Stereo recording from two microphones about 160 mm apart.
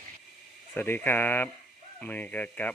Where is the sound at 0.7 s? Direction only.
10° left (ahead or behind).